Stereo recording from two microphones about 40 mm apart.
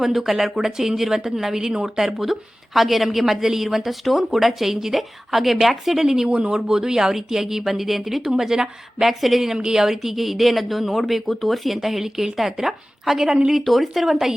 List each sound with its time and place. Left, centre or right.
0.0 s a woman's voice: centre
6.2 s speech: right; by 8.3 s centre
8.3 s speech: centre
9.0 s a woman's voice: centre
9.6 s a woman's voice: centre